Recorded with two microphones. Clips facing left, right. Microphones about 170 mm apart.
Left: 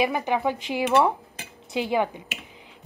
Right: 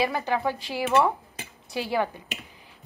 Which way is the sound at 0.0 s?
20° left (ahead or behind).